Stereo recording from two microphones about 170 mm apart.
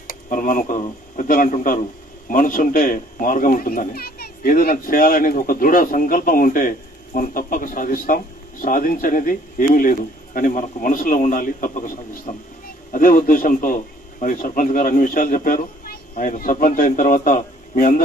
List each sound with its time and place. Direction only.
0.0 s speech: 55° left (ahead or behind)